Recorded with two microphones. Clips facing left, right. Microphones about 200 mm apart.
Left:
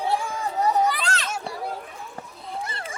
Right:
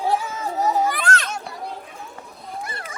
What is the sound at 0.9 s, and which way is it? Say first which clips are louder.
Children playing: right 4 dB; 50° right (ahead or behind).